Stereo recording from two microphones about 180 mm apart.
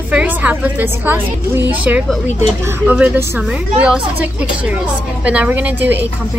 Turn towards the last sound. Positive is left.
turn(degrees=-10)  # may be behind; listen again after turning